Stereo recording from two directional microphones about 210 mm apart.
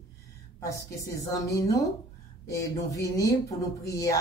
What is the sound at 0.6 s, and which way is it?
Speech, 15° left (ahead or behind).